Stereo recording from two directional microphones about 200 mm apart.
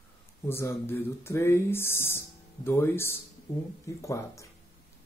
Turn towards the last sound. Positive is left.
turn(degrees=15)  # may be behind; listen again after turning